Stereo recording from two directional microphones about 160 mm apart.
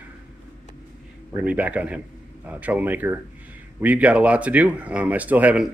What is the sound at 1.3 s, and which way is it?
A man's voice, 10° right (ahead or behind).